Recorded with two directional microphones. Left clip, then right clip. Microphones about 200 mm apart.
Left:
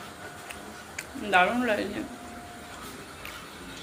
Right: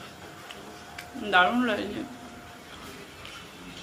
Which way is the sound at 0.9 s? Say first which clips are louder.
Right 1 dB; 10° right (ahead or behind).